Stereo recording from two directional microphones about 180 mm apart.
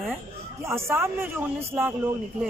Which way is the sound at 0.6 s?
15° right (ahead or behind).